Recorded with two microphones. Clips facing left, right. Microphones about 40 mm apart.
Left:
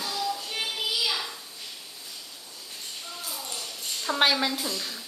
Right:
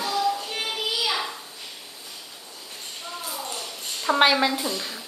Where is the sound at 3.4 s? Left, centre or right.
Centre.